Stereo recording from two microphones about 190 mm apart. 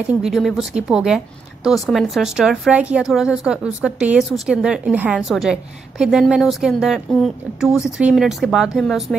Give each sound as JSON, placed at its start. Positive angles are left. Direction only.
{"t": 0.0, "sound": "a woman's voice", "side_deg": -5}